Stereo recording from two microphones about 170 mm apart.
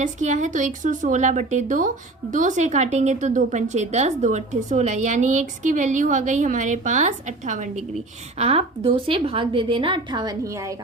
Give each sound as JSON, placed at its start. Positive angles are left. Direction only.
{"t": 0.0, "sound": "a woman's voice", "side_deg": -45}